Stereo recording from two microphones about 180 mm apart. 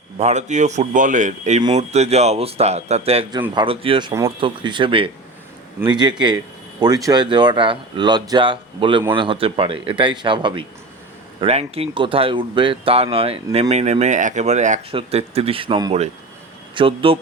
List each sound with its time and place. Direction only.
0.2 s speech: 40° right (ahead or behind)